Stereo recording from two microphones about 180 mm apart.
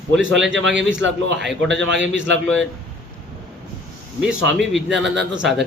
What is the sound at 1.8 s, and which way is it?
Speech, 90° right.